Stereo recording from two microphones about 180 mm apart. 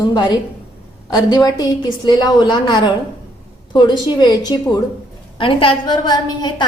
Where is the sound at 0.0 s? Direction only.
25° left (ahead or behind).